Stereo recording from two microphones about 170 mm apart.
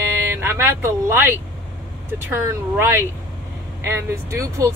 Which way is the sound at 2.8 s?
15° right (ahead or behind).